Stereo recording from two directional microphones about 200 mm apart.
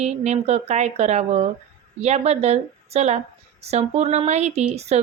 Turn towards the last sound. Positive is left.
turn(degrees=-30)  # may be behind; listen again after turning